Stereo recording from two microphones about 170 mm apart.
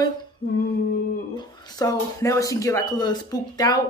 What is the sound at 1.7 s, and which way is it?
Speech, 20° left (ahead or behind).